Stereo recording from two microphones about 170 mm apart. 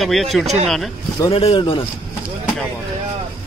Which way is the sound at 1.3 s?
35° left (ahead or behind).